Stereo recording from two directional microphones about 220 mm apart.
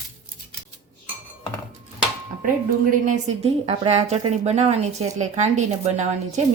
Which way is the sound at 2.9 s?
35° right (ahead or behind).